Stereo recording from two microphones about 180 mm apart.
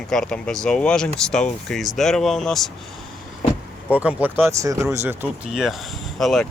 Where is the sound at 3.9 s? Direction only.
10° right (ahead or behind).